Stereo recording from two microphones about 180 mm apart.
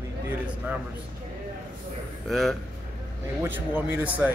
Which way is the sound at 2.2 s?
Centre (ahead or behind).